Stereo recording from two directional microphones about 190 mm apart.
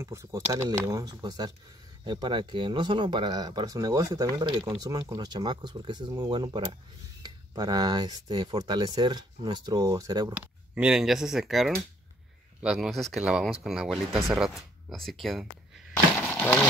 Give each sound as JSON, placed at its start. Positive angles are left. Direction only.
{"t": 0.0, "sound": "speech", "side_deg": -15}
{"t": 10.3, "sound": "speech", "side_deg": -5}
{"t": 16.2, "sound": "a sound", "side_deg": 10}